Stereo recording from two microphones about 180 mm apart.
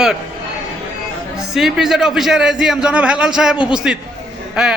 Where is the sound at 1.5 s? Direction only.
Centre (ahead or behind).